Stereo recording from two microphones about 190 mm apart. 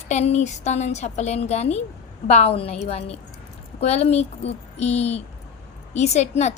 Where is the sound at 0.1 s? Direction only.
35° left (ahead or behind).